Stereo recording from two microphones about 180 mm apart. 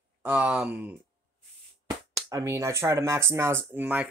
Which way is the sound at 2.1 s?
20° right (ahead or behind).